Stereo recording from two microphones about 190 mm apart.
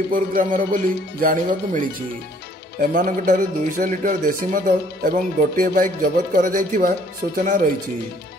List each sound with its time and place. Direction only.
0.1 s speech: 45° right (ahead or behind)